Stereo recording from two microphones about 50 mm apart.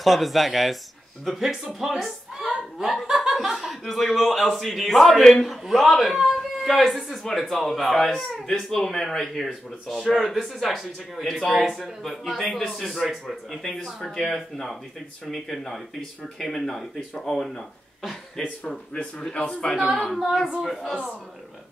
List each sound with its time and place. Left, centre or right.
0.0 s a woman's voice: centre
5.2 s speech: centre
5.5 s speech: centre
9.5 s speech: centre
13.5 s speech: centre
18.9 s a man's voice: centre
20.2 s speech: centre
20.6 s speech: centre